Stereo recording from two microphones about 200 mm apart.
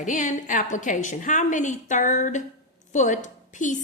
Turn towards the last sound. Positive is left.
turn(degrees=40)  # may be behind; listen again after turning